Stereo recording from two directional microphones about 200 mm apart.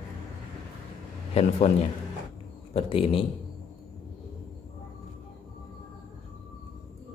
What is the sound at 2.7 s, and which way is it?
Speech, 30° left (ahead or behind).